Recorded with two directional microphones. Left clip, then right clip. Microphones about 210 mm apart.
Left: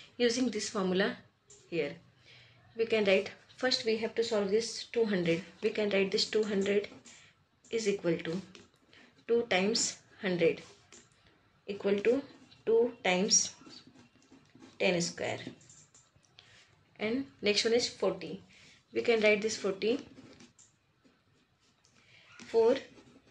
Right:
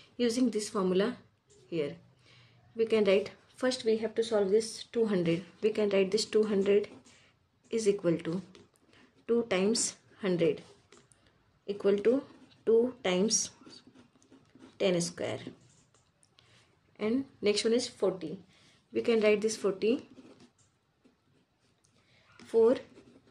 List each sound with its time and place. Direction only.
0.0 s a woman's voice: 50° right (ahead or behind)
11.6 s a woman's voice: 55° right (ahead or behind)
16.9 s a woman's voice: 55° right (ahead or behind)